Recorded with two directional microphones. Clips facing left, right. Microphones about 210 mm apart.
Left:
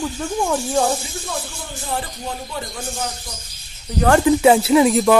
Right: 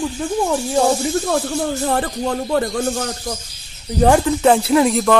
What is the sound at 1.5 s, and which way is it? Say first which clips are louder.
Speech: right 9 dB; 60° right (ahead or behind).